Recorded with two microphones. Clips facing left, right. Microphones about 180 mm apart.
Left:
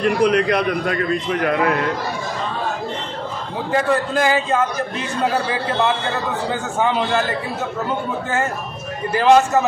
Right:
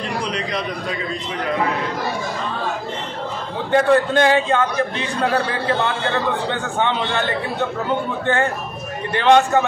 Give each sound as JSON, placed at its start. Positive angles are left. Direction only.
{"t": 0.0, "sound": "a man's voice", "side_deg": 55}
{"t": 3.7, "sound": "a man's voice", "side_deg": 0}
{"t": 9.1, "sound": "a man's voice", "side_deg": 5}